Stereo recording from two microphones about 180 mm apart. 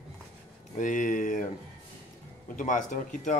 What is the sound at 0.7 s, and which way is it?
Speech, 45° left (ahead or behind).